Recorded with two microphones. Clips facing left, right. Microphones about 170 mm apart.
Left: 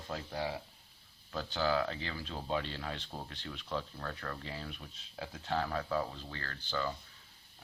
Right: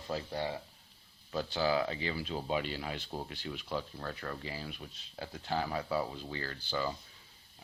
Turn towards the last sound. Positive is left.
turn(degrees=-10)  # may be behind; listen again after turning